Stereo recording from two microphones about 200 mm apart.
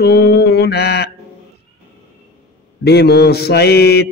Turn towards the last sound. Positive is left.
turn(degrees=55)  # may be behind; listen again after turning